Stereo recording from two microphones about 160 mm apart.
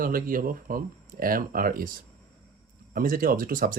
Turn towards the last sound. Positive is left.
turn(degrees=-60)  # may be behind; listen again after turning